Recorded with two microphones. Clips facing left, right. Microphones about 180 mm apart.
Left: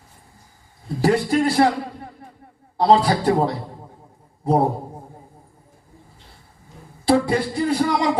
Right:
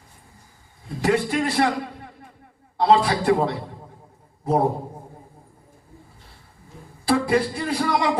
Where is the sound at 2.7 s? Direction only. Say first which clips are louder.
Left 2 dB; 35° left (ahead or behind).